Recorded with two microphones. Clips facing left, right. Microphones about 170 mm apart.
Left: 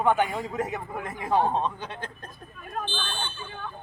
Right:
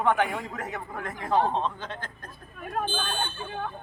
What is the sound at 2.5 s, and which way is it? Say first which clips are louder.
Speech: right 3 dB; 50° right (ahead or behind).